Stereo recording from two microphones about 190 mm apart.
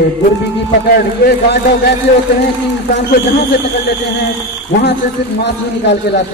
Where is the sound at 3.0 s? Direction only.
60° left (ahead or behind).